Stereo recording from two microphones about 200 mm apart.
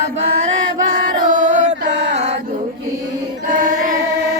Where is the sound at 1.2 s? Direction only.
40° right (ahead or behind).